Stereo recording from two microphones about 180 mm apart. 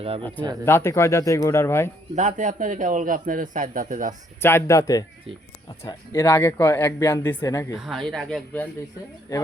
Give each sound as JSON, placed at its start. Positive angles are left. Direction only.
{"t": 0.2, "sound": "speech", "side_deg": 10}
{"t": 2.1, "sound": "a man's voice", "side_deg": -45}
{"t": 4.4, "sound": "speech", "side_deg": 15}
{"t": 7.8, "sound": "speech", "side_deg": 0}